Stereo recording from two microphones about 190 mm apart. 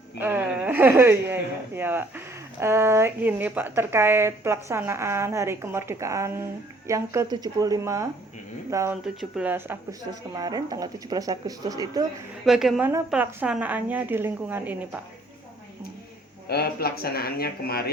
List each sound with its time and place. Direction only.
0.2 s a woman's voice: 10° right (ahead or behind)
12.5 s a woman's voice: centre (ahead or behind)
16.5 s speech: 55° left (ahead or behind)